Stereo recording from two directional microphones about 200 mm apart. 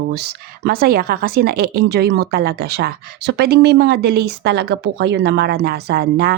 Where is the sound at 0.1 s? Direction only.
55° right (ahead or behind).